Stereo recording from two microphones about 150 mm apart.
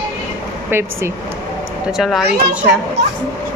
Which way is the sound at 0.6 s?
15° right (ahead or behind).